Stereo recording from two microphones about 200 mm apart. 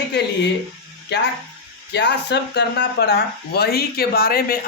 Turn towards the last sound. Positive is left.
turn(degrees=50)  # may be behind; listen again after turning